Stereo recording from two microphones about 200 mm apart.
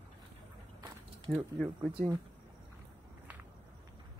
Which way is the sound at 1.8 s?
25° right (ahead or behind).